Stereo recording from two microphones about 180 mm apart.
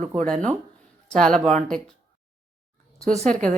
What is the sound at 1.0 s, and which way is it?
Speech, 5° left (ahead or behind).